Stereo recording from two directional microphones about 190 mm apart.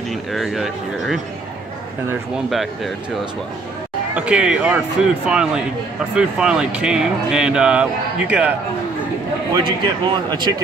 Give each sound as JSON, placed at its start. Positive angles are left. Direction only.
{"t": 0.1, "sound": "speech", "side_deg": 0}
{"t": 2.3, "sound": "speech", "side_deg": 0}
{"t": 4.1, "sound": "speech", "side_deg": -5}
{"t": 9.6, "sound": "speech", "side_deg": -25}